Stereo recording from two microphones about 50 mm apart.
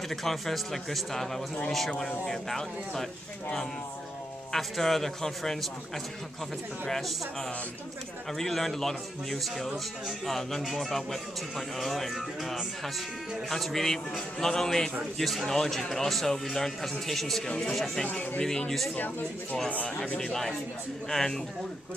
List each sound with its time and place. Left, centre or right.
0.1 s a man's voice: centre
4.5 s speech: centre
6.9 s a man's voice: centre
18.0 s speech: left
18.4 s a man's voice: centre
18.9 s speech: left
20.2 s a man's voice: centre